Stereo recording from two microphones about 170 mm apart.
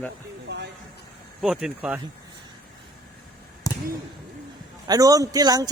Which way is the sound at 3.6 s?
20° left (ahead or behind).